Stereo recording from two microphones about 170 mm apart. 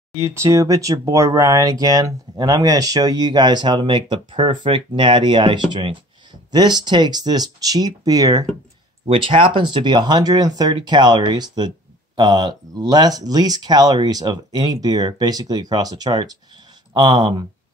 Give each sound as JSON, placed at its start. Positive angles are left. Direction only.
{"t": 0.1, "sound": "speech", "side_deg": -15}
{"t": 9.0, "sound": "speech", "side_deg": -30}